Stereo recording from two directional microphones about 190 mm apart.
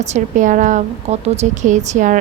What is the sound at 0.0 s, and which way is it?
A woman's voice, 40° right (ahead or behind).